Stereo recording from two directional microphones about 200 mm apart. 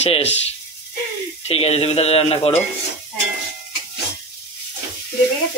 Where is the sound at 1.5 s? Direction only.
30° left (ahead or behind).